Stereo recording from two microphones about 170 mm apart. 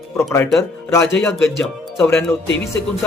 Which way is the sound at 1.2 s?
5° left (ahead or behind).